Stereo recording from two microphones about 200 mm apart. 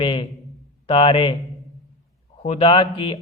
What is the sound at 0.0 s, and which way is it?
A man's voice, 25° left (ahead or behind).